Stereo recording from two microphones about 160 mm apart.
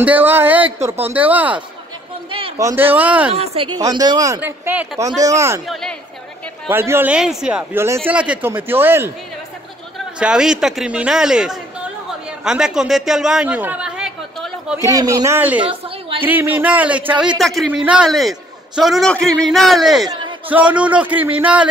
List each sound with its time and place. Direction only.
0.0 s speech: 10° right (ahead or behind)
2.6 s speech: 15° right (ahead or behind)
3.3 s speech: 30° right (ahead or behind)
4.4 s speech: 10° right (ahead or behind)
5.7 s a man's voice: 5° left (ahead or behind)
6.7 s a woman's voice: 15° right (ahead or behind)
14.8 s speech: 20° right (ahead or behind)
15.6 s a woman's voice: 35° right (ahead or behind)
16.3 s a man's voice: 10° right (ahead or behind)